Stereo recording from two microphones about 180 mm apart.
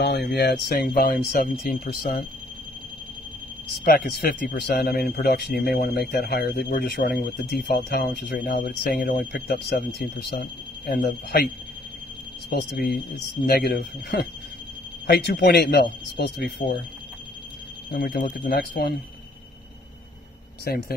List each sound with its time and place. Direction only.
0.0 s speech: 65° left (ahead or behind)
3.8 s speech: 55° left (ahead or behind)
17.9 s speech: 55° left (ahead or behind)
20.7 s speech: 60° left (ahead or behind)